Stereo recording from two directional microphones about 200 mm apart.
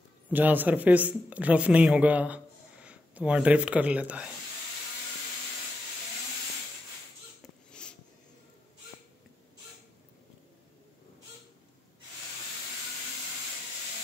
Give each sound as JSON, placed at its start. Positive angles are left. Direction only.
{"t": 0.3, "sound": "speech", "side_deg": -10}